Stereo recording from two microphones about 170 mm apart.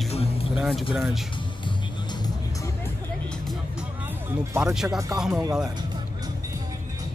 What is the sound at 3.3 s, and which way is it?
Music, centre (ahead or behind).